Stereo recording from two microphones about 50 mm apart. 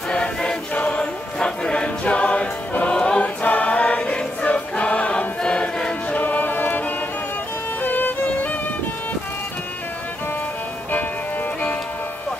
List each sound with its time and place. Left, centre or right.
0.1 s music: centre
2.9 s choir: centre
3.4 s choir: left
6.1 s music: left
7.8 s music: left